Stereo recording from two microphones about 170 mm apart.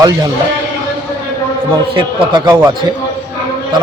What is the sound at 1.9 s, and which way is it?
Speech, 25° right (ahead or behind).